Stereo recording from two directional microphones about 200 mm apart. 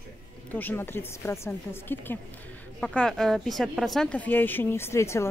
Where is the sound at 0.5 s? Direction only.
10° left (ahead or behind).